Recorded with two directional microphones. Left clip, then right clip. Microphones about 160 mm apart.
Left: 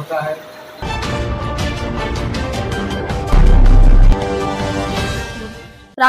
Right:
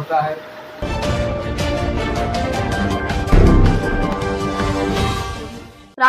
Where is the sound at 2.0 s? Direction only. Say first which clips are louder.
Right 2 dB; centre (ahead or behind).